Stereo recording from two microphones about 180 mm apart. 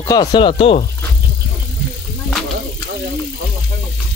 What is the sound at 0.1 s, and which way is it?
Speech, 25° left (ahead or behind).